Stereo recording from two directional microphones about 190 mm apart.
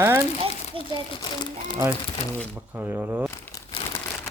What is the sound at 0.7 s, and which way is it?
Crumpling, 25° right (ahead or behind).